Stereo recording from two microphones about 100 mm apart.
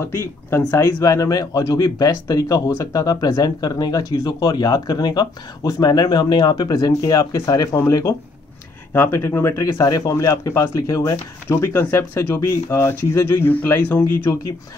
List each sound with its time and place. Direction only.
0.1 s a man's voice: 25° left (ahead or behind)
8.9 s speech: 25° left (ahead or behind)